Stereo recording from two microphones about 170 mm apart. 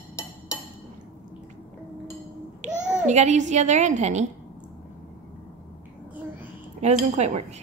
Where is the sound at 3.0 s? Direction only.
45° right (ahead or behind).